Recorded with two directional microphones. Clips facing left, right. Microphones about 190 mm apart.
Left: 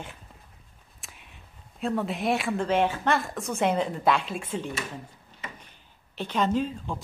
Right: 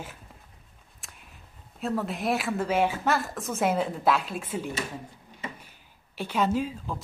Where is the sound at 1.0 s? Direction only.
Centre (ahead or behind).